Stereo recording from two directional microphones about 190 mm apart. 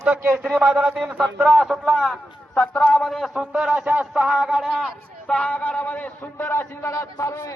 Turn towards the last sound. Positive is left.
turn(degrees=15)  # may be behind; listen again after turning